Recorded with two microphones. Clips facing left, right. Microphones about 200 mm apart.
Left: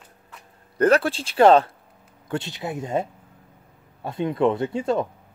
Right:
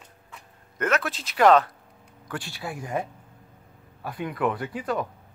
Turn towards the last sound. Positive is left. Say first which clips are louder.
# left 6 dB
turn(degrees=25)  # may be behind; listen again after turning